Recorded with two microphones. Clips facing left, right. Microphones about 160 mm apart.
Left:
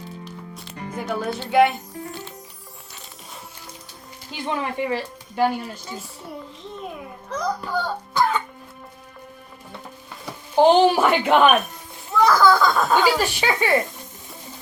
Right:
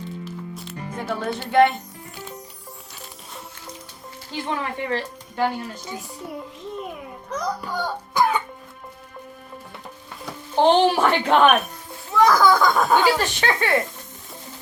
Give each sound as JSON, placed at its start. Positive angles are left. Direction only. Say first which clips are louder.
{"t": 1.2, "sound": "a woman's voice", "louder": "even", "side_deg": 5}
{"t": 4.3, "sound": "speech", "louder": "left 1 dB", "side_deg": 15}
{"t": 7.3, "sound": "cough", "louder": "left 1 dB", "side_deg": -10}
{"t": 10.5, "sound": "speech", "louder": "left 2 dB", "side_deg": 10}
{"t": 12.2, "sound": "speech", "louder": "even", "side_deg": -15}
{"t": 13.1, "sound": "speech", "louder": "left 1 dB", "side_deg": 10}